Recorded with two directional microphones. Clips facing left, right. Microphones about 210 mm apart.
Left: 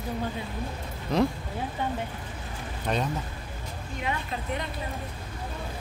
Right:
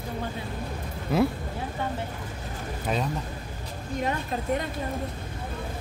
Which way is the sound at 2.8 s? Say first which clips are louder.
Even; centre (ahead or behind).